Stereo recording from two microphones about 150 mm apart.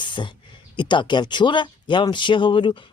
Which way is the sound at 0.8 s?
30° left (ahead or behind).